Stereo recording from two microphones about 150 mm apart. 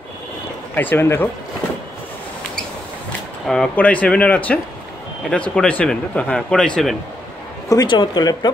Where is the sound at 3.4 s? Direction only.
5° left (ahead or behind).